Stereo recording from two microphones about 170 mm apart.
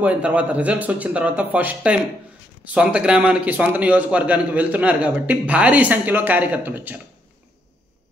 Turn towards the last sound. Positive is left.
turn(degrees=-10)  # may be behind; listen again after turning